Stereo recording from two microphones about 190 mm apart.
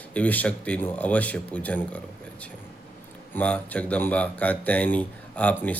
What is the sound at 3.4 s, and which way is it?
A man's voice, 10° left (ahead or behind).